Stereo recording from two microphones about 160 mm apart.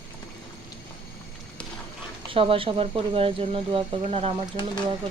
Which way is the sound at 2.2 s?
35° right (ahead or behind).